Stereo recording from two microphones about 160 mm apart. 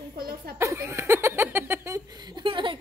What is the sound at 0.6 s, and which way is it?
Speech, 15° right (ahead or behind).